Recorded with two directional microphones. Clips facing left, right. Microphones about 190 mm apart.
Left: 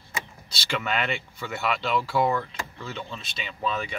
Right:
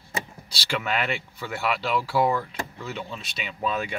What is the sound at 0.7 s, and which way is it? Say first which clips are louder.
Speech: right 1 dB; 5° right (ahead or behind).